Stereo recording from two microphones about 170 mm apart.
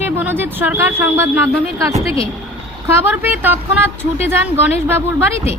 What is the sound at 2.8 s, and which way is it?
Speech, 10° right (ahead or behind).